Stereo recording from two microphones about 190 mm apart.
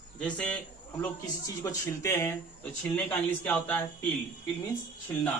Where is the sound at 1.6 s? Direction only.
15° left (ahead or behind).